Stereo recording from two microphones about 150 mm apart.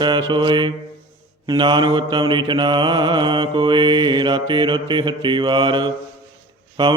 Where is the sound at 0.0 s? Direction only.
30° right (ahead or behind).